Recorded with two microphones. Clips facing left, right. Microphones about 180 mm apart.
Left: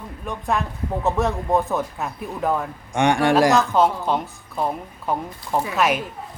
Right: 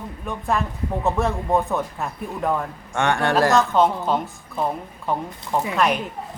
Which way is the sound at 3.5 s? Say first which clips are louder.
Even; centre (ahead or behind).